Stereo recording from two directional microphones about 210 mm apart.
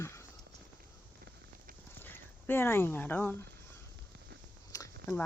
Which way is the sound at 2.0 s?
10° left (ahead or behind).